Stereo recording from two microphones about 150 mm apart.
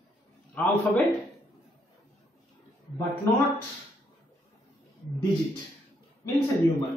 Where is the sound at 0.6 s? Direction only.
10° left (ahead or behind).